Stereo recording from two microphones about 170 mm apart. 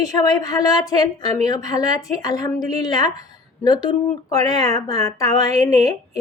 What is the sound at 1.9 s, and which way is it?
A woman's voice, 20° left (ahead or behind).